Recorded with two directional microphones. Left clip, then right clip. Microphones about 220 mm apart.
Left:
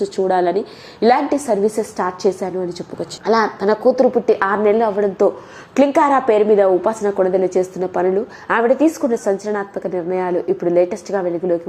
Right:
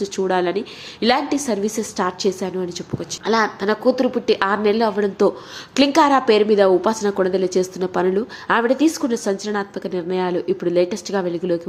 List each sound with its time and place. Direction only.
0.3 s a woman's voice: 25° right (ahead or behind)
0.9 s a woman's voice: 5° right (ahead or behind)
3.9 s a woman's voice: 20° right (ahead or behind)
4.8 s a woman's voice: 25° right (ahead or behind)